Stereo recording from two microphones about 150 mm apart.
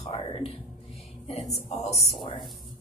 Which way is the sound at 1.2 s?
45° left (ahead or behind).